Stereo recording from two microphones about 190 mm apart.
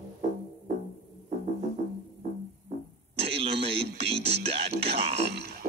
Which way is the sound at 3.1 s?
30° right (ahead or behind).